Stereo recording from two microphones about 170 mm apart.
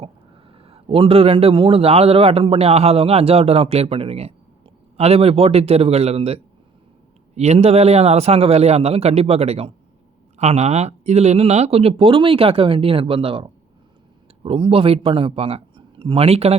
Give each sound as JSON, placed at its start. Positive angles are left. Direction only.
{"t": 0.0, "sound": "a man's voice", "side_deg": -35}